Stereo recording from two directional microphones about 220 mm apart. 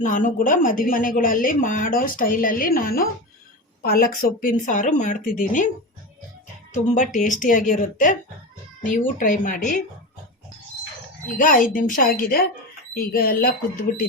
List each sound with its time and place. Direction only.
0.0 s a woman's voice: 35° left (ahead or behind)
6.8 s a woman's voice: 35° left (ahead or behind)
11.3 s a woman's voice: 40° left (ahead or behind)